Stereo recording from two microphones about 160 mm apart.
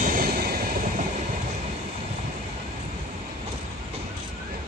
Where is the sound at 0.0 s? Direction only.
60° right (ahead or behind).